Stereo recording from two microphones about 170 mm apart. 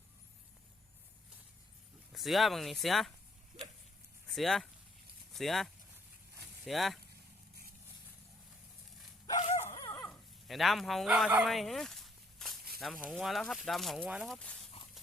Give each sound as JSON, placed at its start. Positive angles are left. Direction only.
{"t": 2.1, "sound": "speech", "side_deg": 0}
{"t": 4.3, "sound": "speech", "side_deg": 0}
{"t": 9.7, "sound": "dog", "side_deg": 20}
{"t": 10.0, "sound": "dog", "side_deg": 5}
{"t": 12.8, "sound": "speech", "side_deg": 0}